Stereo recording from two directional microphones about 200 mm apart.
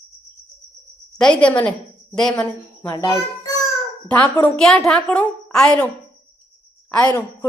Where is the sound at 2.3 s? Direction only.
20° left (ahead or behind).